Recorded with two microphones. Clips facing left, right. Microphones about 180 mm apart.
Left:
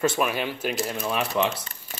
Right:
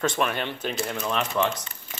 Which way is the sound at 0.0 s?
5° left (ahead or behind).